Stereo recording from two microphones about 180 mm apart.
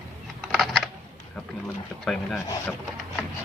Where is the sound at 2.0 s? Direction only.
5° left (ahead or behind).